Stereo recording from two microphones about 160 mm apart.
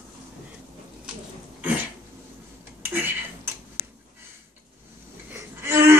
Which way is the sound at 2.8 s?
10° right (ahead or behind).